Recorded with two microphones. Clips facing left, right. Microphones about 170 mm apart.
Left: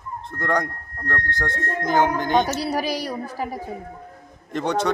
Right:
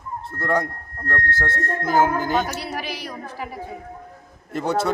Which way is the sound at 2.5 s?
35° left (ahead or behind).